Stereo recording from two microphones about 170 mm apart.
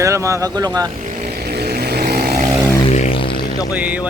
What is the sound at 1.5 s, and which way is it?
Vehicle, 70° right (ahead or behind).